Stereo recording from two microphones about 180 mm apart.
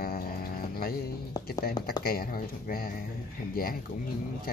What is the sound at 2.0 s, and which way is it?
Speech, 55° left (ahead or behind).